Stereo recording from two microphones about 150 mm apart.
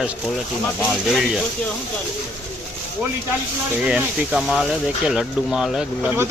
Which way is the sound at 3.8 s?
5° right (ahead or behind).